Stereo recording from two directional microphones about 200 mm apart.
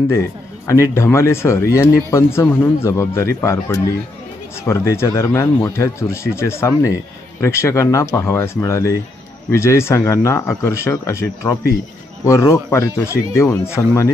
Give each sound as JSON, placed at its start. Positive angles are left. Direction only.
{"t": 0.7, "sound": "speech", "side_deg": 15}